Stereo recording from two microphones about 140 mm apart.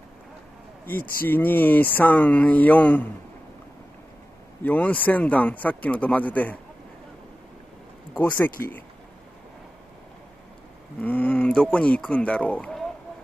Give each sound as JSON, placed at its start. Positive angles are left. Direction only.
{"t": 1.0, "sound": "speech", "side_deg": 90}
{"t": 1.3, "sound": "speech", "side_deg": 15}
{"t": 4.6, "sound": "speech", "side_deg": 10}
{"t": 8.2, "sound": "speech", "side_deg": 10}
{"t": 11.0, "sound": "speech", "side_deg": 10}